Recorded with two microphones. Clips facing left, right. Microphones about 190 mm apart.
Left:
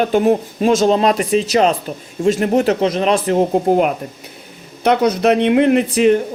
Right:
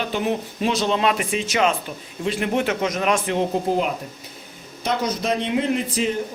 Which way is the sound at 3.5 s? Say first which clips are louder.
Left 7 dB; 55° left (ahead or behind).